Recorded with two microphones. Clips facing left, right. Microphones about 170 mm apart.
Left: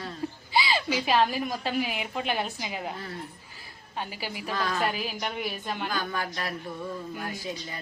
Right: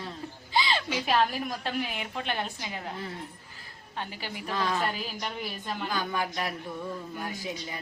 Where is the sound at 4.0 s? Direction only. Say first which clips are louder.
Left 2 dB; 10° left (ahead or behind).